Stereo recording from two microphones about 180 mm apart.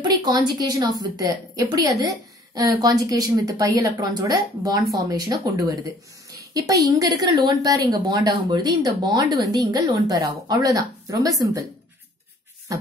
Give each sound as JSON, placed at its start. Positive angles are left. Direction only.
{"t": 0.0, "sound": "a woman's voice", "side_deg": -25}